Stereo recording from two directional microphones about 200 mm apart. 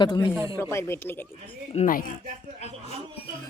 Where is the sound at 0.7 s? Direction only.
10° left (ahead or behind).